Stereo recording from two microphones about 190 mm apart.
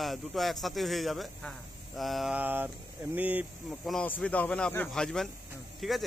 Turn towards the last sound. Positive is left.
turn(degrees=0)  # may be behind; listen again after turning